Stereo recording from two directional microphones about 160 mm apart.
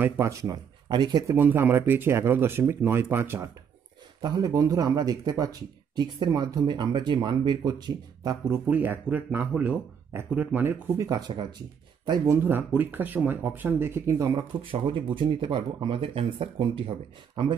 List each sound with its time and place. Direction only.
0.0 s speech: 20° right (ahead or behind)
1.3 s speech: 15° right (ahead or behind)
8.6 s speech: 10° right (ahead or behind)
11.1 s speech: 25° right (ahead or behind)
12.1 s speech: 15° right (ahead or behind); by 16.9 s 35° right (ahead or behind)